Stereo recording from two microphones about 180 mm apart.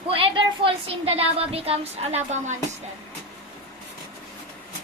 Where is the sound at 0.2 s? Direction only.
30° right (ahead or behind).